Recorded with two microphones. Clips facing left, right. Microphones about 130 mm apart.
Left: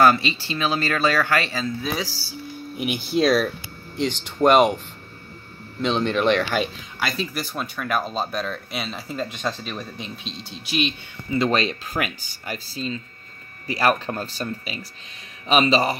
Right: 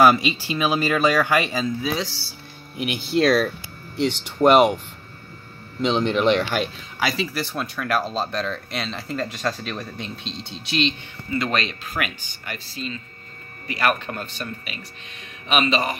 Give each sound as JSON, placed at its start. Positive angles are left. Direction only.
{"t": 0.0, "sound": "speech", "side_deg": -10}
{"t": 1.9, "sound": "speech", "side_deg": 5}
{"t": 3.2, "sound": "speech", "side_deg": 0}
{"t": 5.9, "sound": "speech", "side_deg": -15}
{"t": 6.5, "sound": "speech", "side_deg": 0}
{"t": 11.3, "sound": "speech", "side_deg": 30}